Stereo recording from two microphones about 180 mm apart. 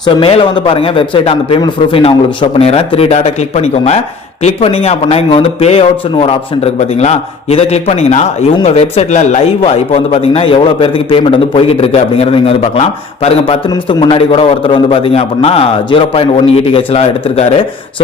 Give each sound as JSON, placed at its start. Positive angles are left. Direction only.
{"t": 0.0, "sound": "a man's voice", "side_deg": 30}